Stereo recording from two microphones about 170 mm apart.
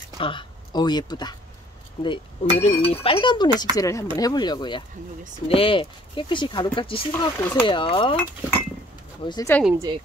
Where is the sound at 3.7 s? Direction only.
20° left (ahead or behind).